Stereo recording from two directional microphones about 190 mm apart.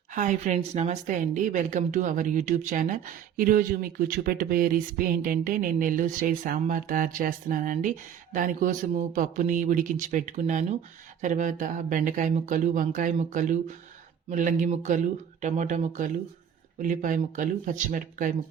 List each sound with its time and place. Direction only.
0.1 s a woman's voice: 40° right (ahead or behind)